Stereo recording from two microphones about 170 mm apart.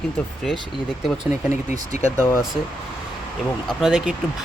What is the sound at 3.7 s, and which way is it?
Speech, centre (ahead or behind).